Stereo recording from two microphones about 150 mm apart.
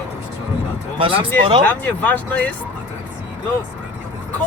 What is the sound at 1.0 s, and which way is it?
Speech, 35° right (ahead or behind).